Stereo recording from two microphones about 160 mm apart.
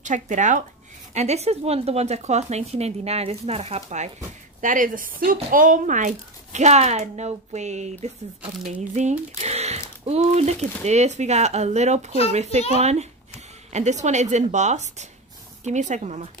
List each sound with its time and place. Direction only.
0.0 s speech: 50° right (ahead or behind)
4.6 s speech: 55° right (ahead or behind)